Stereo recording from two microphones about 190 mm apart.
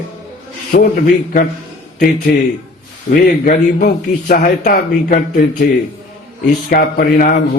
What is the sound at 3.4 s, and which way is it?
Speech, 40° left (ahead or behind).